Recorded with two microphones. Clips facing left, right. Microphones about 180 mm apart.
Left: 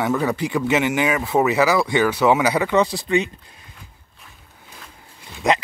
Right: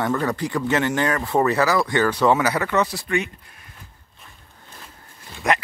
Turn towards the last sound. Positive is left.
turn(degrees=20)  # may be behind; listen again after turning